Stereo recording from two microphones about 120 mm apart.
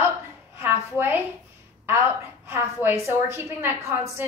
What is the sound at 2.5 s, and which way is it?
A woman's voice, 20° right (ahead or behind).